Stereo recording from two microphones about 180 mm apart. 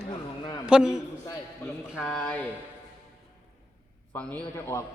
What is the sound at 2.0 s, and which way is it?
Speech, 5° left (ahead or behind).